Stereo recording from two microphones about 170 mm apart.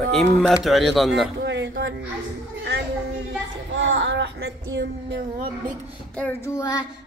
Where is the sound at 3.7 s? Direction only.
90° right.